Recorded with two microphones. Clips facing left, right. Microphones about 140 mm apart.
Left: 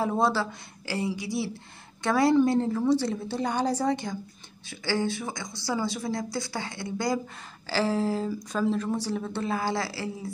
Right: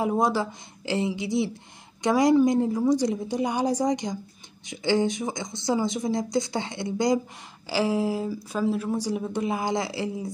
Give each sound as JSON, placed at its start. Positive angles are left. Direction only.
{"t": 0.0, "sound": "speech", "side_deg": -15}